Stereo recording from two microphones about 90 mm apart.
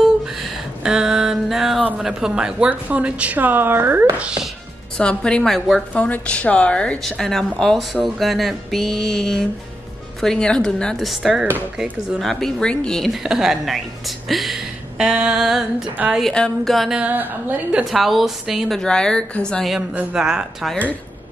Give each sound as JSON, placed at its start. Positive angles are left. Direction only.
{"t": 0.0, "sound": "a sound", "side_deg": -5}
{"t": 2.0, "sound": "a woman's voice", "side_deg": -5}
{"t": 4.9, "sound": "speech", "side_deg": 10}
{"t": 6.0, "sound": "speech", "side_deg": 15}
{"t": 15.0, "sound": "a woman's voice", "side_deg": -10}
{"t": 16.2, "sound": "speech", "side_deg": 5}
{"t": 16.9, "sound": "a woman's voice", "side_deg": -15}
{"t": 17.8, "sound": "speech", "side_deg": 0}
{"t": 18.8, "sound": "speech", "side_deg": 10}
{"t": 19.7, "sound": "a woman's voice", "side_deg": -15}